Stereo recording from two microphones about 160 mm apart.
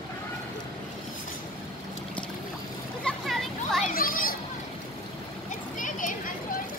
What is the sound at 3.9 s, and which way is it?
Children playing, 65° left (ahead or behind).